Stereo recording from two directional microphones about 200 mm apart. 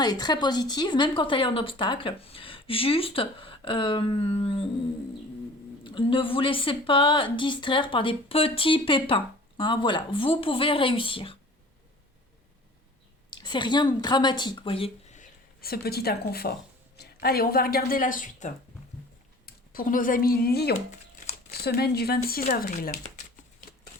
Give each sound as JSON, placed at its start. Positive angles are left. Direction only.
{"t": 0.0, "sound": "speech", "side_deg": 20}
{"t": 5.8, "sound": "speech", "side_deg": 25}
{"t": 13.4, "sound": "a woman's voice", "side_deg": 20}